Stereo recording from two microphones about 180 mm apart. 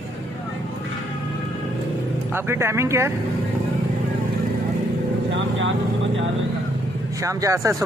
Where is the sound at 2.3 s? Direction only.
15° right (ahead or behind).